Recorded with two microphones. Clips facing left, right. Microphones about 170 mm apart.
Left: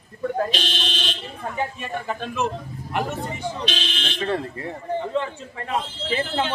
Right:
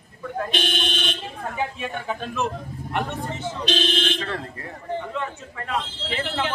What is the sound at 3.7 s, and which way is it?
Speech, 45° right (ahead or behind).